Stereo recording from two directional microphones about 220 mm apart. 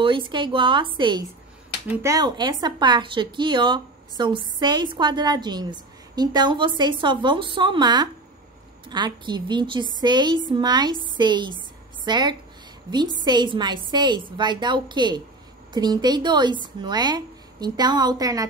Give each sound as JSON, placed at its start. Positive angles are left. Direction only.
{"t": 0.0, "sound": "a woman's voice", "side_deg": -20}